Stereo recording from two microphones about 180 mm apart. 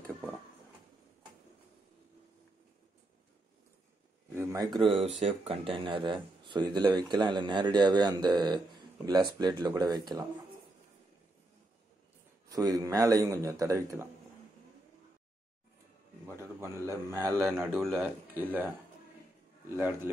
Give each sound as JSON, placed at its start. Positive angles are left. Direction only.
{"t": 4.4, "sound": "a sound", "side_deg": -15}
{"t": 4.7, "sound": "speech", "side_deg": -30}
{"t": 12.4, "sound": "a man's voice", "side_deg": -20}
{"t": 16.3, "sound": "a man's voice", "side_deg": -15}
{"t": 19.7, "sound": "a man's voice", "side_deg": -15}